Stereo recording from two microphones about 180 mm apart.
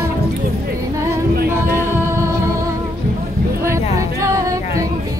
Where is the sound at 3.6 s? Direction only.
15° right (ahead or behind).